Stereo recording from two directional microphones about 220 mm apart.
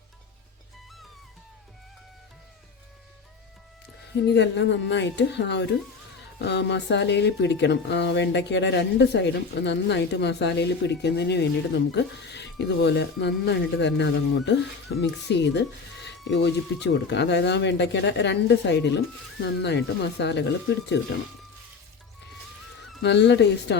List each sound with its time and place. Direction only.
4.1 s speech: 50° left (ahead or behind)
23.0 s speech: 50° left (ahead or behind)